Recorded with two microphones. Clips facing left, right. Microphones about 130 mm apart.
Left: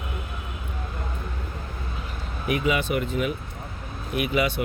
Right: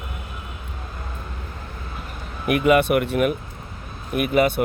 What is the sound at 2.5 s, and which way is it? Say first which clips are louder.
Speech: right 7 dB; 60° right (ahead or behind).